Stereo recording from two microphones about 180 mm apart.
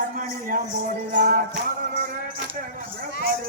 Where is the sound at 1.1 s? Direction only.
50° right (ahead or behind).